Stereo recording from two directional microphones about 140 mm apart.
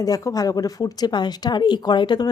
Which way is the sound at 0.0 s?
25° left (ahead or behind).